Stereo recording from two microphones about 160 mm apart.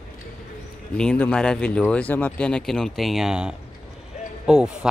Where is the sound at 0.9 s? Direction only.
5° left (ahead or behind).